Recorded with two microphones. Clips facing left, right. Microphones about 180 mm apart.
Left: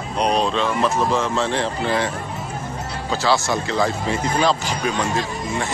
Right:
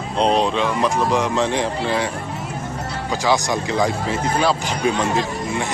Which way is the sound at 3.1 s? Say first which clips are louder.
Even; 15° right (ahead or behind).